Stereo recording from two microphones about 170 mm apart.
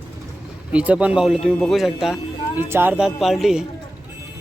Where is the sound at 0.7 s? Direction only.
5° right (ahead or behind).